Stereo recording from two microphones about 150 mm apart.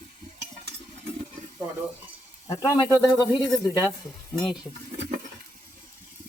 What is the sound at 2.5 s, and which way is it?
Speech, 20° left (ahead or behind).